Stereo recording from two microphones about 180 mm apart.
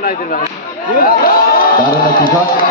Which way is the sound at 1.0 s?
55° left (ahead or behind).